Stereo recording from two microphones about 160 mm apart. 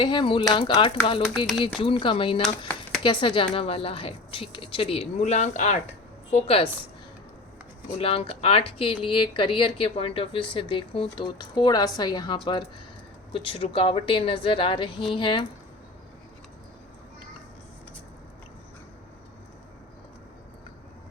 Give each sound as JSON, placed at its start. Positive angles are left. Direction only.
{"t": 0.0, "sound": "speech", "side_deg": 30}
{"t": 6.3, "sound": "speech", "side_deg": 35}
{"t": 7.9, "sound": "speech", "side_deg": 35}